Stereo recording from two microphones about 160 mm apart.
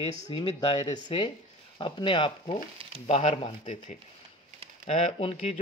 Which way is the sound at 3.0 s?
40° left (ahead or behind).